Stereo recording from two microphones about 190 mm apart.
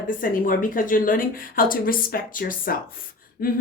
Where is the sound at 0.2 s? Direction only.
45° left (ahead or behind).